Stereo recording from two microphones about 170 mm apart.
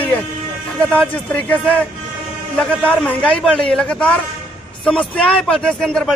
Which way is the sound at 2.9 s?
5° left (ahead or behind).